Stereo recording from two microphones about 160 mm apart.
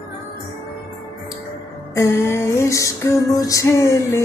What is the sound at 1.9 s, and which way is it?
Music, 15° left (ahead or behind).